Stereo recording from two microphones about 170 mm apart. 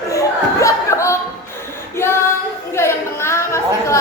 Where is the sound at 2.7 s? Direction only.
15° left (ahead or behind).